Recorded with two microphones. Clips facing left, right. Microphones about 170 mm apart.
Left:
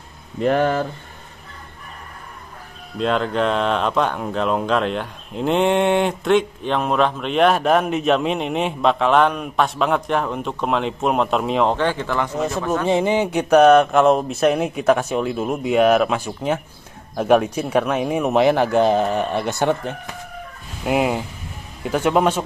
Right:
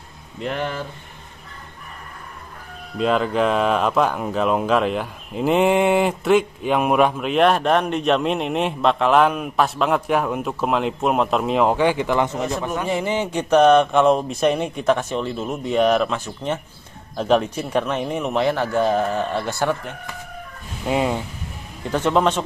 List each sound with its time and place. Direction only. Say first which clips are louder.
0.4 s speech: left 8 dB; 50° left (ahead or behind)
3.0 s speech: right 1 dB; 5° right (ahead or behind)
12.8 s speech: left 7 dB; 25° left (ahead or behind)
13.1 s speech: even; 10° left (ahead or behind)
20.8 s speech: left 2 dB; 10° left (ahead or behind)